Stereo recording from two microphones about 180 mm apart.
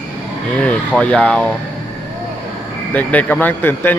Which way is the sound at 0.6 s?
5° left (ahead or behind).